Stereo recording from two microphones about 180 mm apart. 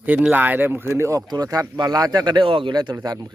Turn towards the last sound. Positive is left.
turn(degrees=-20)  # may be behind; listen again after turning